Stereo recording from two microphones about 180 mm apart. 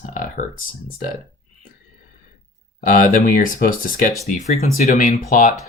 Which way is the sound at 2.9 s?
50° left (ahead or behind).